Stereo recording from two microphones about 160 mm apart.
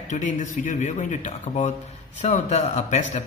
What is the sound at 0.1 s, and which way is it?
Speech, 50° left (ahead or behind).